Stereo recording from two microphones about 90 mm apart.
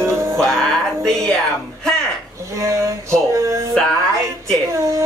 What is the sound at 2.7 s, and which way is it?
Music, 35° right (ahead or behind).